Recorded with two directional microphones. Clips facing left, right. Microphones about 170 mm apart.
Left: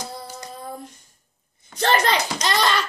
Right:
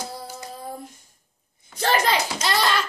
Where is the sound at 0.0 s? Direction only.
5° right (ahead or behind).